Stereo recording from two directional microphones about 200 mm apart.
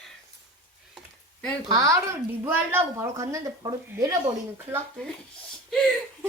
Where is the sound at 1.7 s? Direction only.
15° right (ahead or behind).